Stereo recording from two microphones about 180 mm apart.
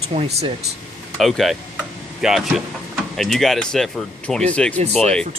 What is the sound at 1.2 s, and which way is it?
Speech, centre (ahead or behind).